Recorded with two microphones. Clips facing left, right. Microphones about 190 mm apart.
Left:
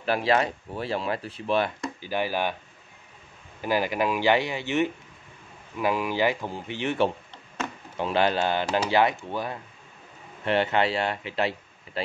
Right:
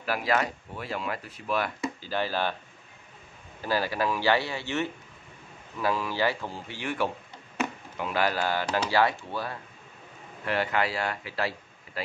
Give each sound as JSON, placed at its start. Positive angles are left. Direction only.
{"t": 0.0, "sound": "speech", "side_deg": 25}
{"t": 2.0, "sound": "speech", "side_deg": 15}
{"t": 3.6, "sound": "speech", "side_deg": 15}